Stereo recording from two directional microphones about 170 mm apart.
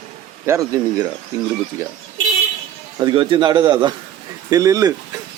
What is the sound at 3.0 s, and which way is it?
A man's voice, 30° right (ahead or behind).